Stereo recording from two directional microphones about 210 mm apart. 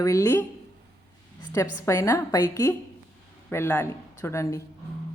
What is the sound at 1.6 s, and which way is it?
Speech, 15° left (ahead or behind).